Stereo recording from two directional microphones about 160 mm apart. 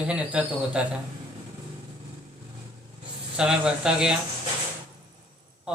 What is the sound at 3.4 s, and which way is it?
Speech, 5° right (ahead or behind).